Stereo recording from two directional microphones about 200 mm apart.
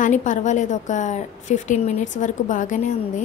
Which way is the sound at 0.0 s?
40° left (ahead or behind).